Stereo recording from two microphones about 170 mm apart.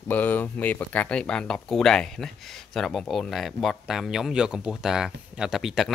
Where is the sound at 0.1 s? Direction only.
10° left (ahead or behind).